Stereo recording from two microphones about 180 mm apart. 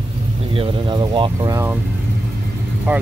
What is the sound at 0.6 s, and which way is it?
Speech, 25° right (ahead or behind).